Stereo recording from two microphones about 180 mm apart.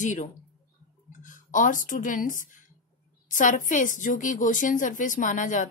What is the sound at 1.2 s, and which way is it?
A woman's voice, 45° left (ahead or behind).